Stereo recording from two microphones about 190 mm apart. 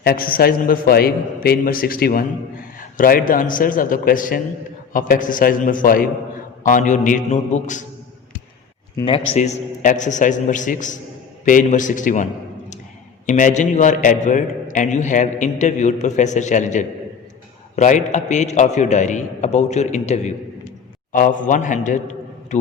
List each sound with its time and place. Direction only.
0.0 s a man's voice: 50° left (ahead or behind)
9.3 s a man's voice: 40° left (ahead or behind)